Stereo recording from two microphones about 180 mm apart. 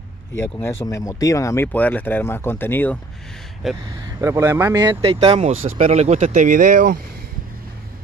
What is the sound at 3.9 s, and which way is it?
Speech, 15° right (ahead or behind).